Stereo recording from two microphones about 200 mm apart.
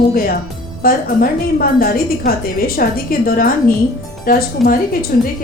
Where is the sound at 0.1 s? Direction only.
50° left (ahead or behind).